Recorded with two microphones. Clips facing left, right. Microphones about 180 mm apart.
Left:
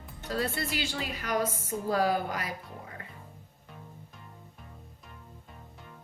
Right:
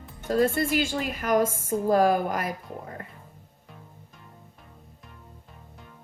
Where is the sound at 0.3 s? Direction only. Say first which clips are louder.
Right 9 dB; 45° right (ahead or behind).